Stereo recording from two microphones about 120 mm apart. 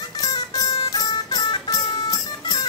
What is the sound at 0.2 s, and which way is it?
Music, 35° left (ahead or behind).